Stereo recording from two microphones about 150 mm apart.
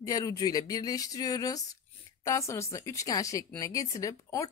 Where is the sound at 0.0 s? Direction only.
25° left (ahead or behind).